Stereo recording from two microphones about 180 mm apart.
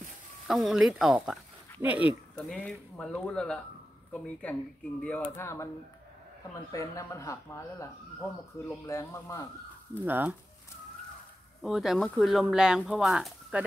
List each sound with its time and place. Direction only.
0.5 s speech: centre (ahead or behind)
2.3 s speech: 5° left (ahead or behind)
6.7 s speech: 20° left (ahead or behind)
10.0 s speech: 10° right (ahead or behind)
11.6 s speech: centre (ahead or behind)